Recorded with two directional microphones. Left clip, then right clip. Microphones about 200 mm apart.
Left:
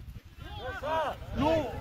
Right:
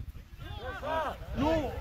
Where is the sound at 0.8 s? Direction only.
45° left (ahead or behind).